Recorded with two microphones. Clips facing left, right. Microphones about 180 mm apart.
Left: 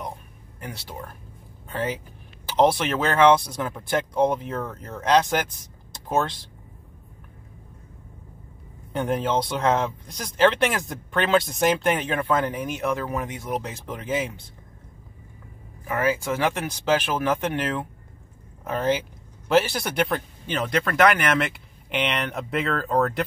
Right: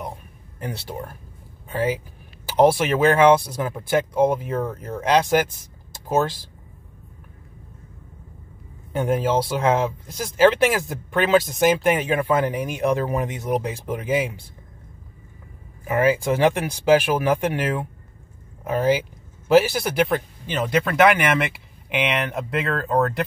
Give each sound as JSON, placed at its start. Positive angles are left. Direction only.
{"t": 0.6, "sound": "speech", "side_deg": -25}
{"t": 1.7, "sound": "speech", "side_deg": -10}
{"t": 8.9, "sound": "speech", "side_deg": -5}
{"t": 15.9, "sound": "speech", "side_deg": -15}